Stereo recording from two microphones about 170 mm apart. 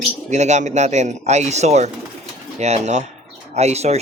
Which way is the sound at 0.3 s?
45° right (ahead or behind).